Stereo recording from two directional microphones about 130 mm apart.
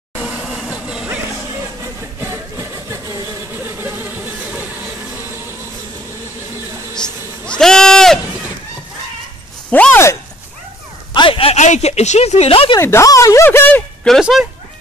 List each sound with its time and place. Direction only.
0.1 s vehicle: 10° right (ahead or behind)
0.6 s music: 10° right (ahead or behind)
2.1 s a sound: 20° right (ahead or behind)
3.5 s a sound: 15° right (ahead or behind)
7.0 s sheep: 5° left (ahead or behind)
9.7 s speech: 15° left (ahead or behind)
11.1 s a sound: 45° left (ahead or behind)
11.6 s speech: 60° left (ahead or behind); by 12.7 s 45° left (ahead or behind)
12.7 s speech: 25° left (ahead or behind)
14.0 s speech: 5° left (ahead or behind)